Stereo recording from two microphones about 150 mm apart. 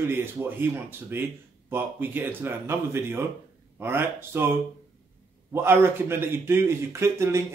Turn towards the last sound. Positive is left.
turn(degrees=-20)  # may be behind; listen again after turning